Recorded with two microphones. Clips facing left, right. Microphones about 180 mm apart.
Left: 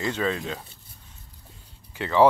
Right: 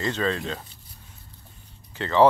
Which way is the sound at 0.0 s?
10° left (ahead or behind).